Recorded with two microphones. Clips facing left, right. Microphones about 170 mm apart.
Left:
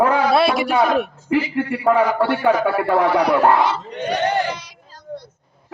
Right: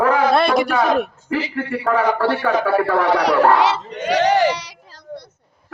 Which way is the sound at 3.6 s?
90° right.